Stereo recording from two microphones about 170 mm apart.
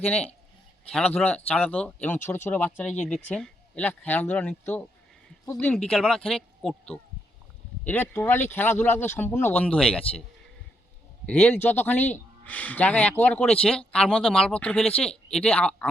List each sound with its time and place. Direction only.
0.0 s speech: 10° left (ahead or behind)
8.1 s speech: 10° left (ahead or behind)
11.3 s speech: 10° left (ahead or behind)